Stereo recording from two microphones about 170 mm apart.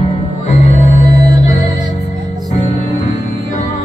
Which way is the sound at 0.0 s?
45° left (ahead or behind).